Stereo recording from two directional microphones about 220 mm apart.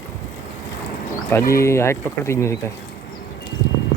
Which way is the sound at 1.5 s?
15° left (ahead or behind).